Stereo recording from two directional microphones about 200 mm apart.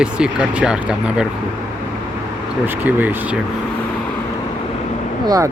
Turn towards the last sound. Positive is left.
turn(degrees=-15)  # may be behind; listen again after turning